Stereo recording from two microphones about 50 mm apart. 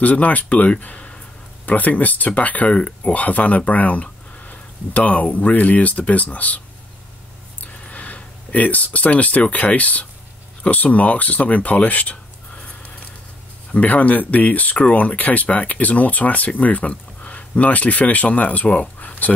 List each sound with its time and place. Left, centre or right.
0.0 s speech: left
7.9 s speech: left
13.7 s speech: left